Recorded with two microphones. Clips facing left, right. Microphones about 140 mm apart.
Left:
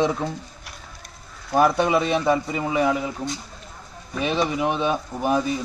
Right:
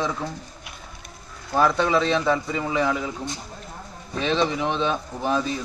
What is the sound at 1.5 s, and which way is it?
A man's voice, 15° left (ahead or behind).